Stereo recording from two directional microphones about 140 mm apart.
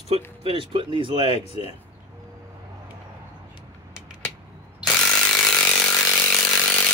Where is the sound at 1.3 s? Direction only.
45° left (ahead or behind).